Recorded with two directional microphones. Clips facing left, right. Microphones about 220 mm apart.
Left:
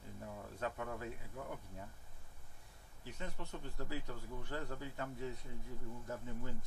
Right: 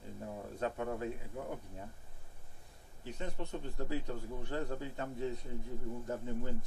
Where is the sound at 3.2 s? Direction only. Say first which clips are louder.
Right 6 dB; 30° right (ahead or behind).